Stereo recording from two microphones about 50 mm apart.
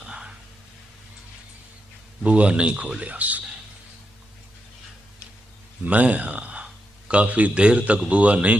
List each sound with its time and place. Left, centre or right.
0.0 s a sound: centre
2.2 s a man's voice: right
5.8 s speech: right